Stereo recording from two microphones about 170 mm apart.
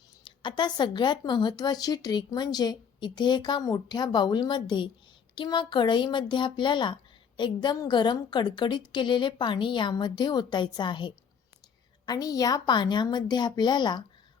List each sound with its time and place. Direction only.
0.3 s speech: 25° left (ahead or behind)